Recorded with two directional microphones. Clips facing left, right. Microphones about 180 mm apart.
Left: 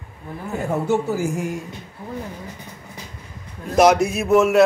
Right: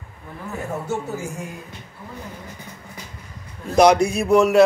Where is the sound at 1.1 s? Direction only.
90° left.